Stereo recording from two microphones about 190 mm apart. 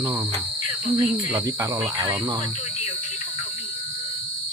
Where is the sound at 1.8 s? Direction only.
25° right (ahead or behind).